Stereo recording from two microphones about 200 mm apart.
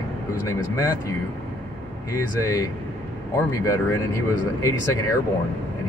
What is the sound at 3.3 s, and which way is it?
Speech, 15° left (ahead or behind).